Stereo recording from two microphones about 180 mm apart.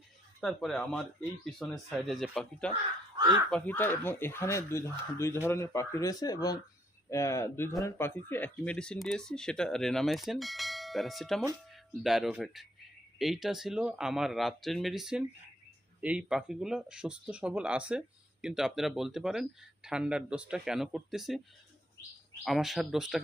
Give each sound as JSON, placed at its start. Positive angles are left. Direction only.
{"t": 0.4, "sound": "speech", "side_deg": 0}
{"t": 3.2, "sound": "speech", "side_deg": -20}
{"t": 3.5, "sound": "speech", "side_deg": 10}
{"t": 22.4, "sound": "speech", "side_deg": 0}